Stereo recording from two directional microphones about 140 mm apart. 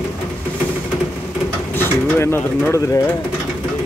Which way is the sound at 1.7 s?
15° left (ahead or behind).